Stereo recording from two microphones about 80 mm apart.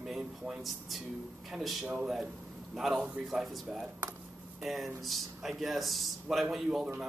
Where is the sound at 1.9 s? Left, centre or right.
Centre.